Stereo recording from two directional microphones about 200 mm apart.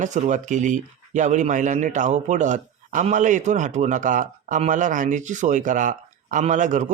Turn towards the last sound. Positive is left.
turn(degrees=-40)  # may be behind; listen again after turning